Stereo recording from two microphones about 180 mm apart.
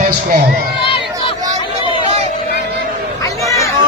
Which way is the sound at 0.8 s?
30° left (ahead or behind).